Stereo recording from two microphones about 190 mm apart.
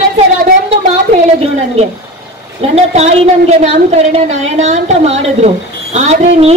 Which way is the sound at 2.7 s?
35° right (ahead or behind).